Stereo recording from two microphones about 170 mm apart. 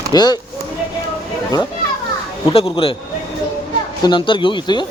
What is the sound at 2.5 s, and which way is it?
Speech, 35° left (ahead or behind).